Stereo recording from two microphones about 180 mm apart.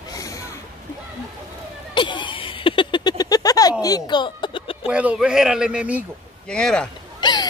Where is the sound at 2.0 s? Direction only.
25° left (ahead or behind).